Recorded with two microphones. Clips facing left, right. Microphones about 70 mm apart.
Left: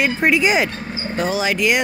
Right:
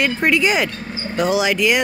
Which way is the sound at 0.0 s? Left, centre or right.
Centre.